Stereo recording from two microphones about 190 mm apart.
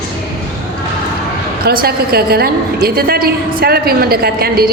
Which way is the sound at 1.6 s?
55° right (ahead or behind).